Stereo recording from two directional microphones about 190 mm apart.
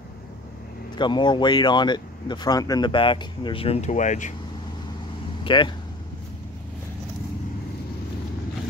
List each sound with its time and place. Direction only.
0.9 s speech: 25° left (ahead or behind); by 4.3 s 40° left (ahead or behind)
5.4 s speech: 25° left (ahead or behind)